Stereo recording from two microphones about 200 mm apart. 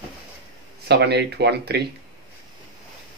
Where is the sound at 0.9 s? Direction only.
55° right (ahead or behind).